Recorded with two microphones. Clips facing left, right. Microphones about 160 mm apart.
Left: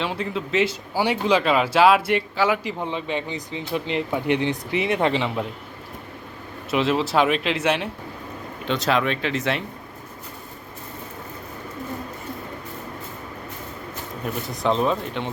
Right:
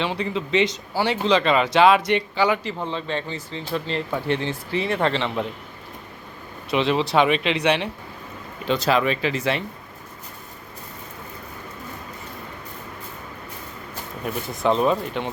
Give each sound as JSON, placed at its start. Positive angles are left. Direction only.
{"t": 0.0, "sound": "speech", "side_deg": 0}
{"t": 2.6, "sound": "speech", "side_deg": 15}
{"t": 6.7, "sound": "speech", "side_deg": 0}
{"t": 14.5, "sound": "speech", "side_deg": 0}